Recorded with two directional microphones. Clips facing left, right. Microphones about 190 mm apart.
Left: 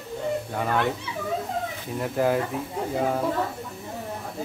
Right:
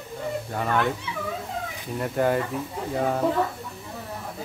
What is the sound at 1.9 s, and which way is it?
Speech, 5° left (ahead or behind).